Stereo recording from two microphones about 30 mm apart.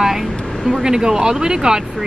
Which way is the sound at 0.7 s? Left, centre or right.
Right.